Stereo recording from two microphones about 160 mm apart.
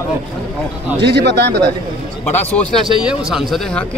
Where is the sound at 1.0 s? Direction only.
90° right.